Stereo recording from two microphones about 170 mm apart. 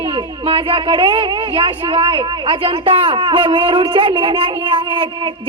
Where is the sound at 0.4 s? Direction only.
30° right (ahead or behind).